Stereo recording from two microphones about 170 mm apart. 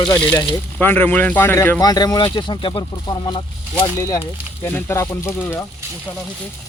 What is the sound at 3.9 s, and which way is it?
Speech, 15° left (ahead or behind).